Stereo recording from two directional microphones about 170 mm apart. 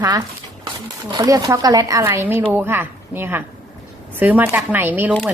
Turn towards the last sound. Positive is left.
turn(degrees=-10)  # may be behind; listen again after turning